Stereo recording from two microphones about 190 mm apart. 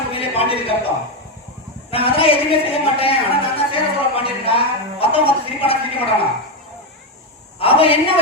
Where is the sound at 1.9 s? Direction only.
30° left (ahead or behind).